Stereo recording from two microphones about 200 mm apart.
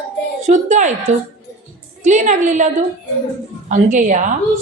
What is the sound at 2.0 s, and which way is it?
A woman's voice, 35° right (ahead or behind).